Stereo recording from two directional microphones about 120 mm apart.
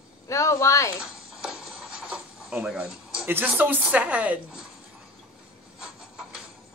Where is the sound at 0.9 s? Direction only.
5° right (ahead or behind).